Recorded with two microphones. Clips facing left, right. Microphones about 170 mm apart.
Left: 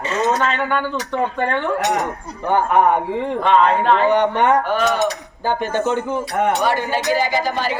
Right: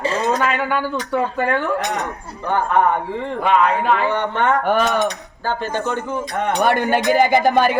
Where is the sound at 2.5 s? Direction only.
20° left (ahead or behind).